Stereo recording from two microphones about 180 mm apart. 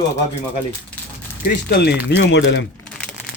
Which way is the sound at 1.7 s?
65° left (ahead or behind).